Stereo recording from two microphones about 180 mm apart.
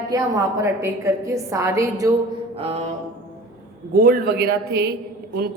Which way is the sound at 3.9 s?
60° right (ahead or behind).